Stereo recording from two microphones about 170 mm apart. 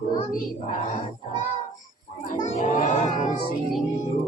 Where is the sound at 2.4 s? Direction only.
45° left (ahead or behind).